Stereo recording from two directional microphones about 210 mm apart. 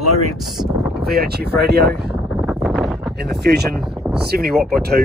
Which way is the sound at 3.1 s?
50° right (ahead or behind).